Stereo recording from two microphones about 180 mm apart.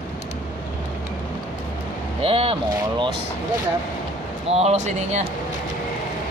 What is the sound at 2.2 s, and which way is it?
Speech, 30° right (ahead or behind).